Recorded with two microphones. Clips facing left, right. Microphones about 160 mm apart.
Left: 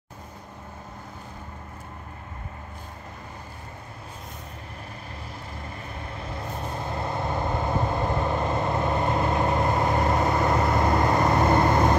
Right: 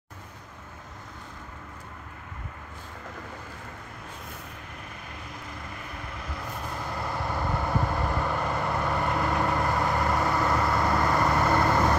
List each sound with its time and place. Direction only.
6.1 s vehicle: 25° left (ahead or behind)